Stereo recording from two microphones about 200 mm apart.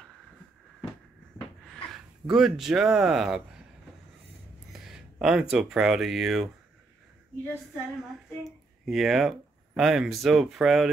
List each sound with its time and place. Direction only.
1.6 s speech: centre (ahead or behind)
4.7 s speech: 5° right (ahead or behind)
8.5 s speech: centre (ahead or behind)